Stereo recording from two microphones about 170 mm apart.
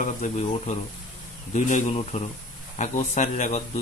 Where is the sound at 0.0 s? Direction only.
45° left (ahead or behind).